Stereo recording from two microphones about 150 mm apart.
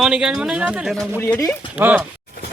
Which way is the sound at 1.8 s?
10° right (ahead or behind).